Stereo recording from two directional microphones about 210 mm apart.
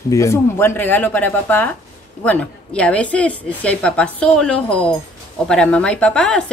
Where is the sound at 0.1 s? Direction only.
15° left (ahead or behind).